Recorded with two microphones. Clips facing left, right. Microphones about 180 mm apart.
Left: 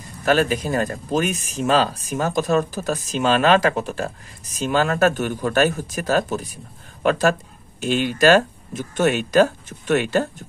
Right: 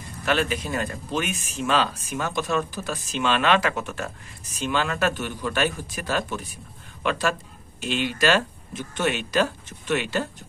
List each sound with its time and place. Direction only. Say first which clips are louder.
0.2 s speech: left 6 dB; 40° left (ahead or behind)